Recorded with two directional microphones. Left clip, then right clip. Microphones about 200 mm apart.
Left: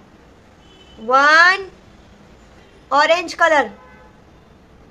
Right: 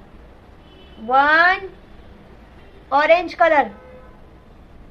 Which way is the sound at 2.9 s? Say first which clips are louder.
Even; 25° left (ahead or behind).